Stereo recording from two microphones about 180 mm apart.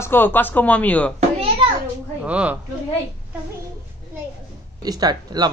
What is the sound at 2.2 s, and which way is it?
Speech, 5° right (ahead or behind).